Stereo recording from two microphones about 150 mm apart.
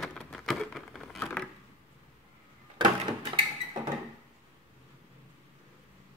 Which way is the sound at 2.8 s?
30° right (ahead or behind).